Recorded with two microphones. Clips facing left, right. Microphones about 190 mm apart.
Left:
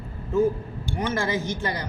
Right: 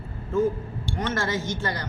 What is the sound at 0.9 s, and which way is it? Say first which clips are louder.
Speech: left 2 dB; 10° left (ahead or behind).